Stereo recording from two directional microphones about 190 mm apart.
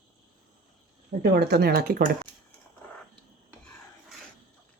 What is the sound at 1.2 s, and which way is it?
Speech, 55° right (ahead or behind).